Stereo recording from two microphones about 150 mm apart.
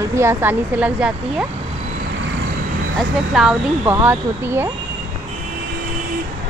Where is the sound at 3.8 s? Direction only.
15° right (ahead or behind).